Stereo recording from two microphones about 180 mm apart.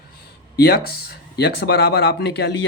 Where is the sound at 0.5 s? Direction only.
60° left (ahead or behind).